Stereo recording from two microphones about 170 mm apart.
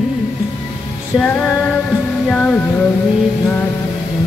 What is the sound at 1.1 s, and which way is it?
Music, 5° left (ahead or behind).